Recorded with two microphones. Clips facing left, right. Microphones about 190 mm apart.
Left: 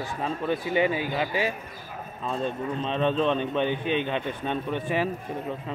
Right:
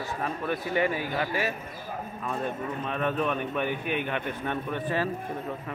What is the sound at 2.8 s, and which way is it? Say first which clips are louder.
A man's voice: left 4 dB; 25° left (ahead or behind).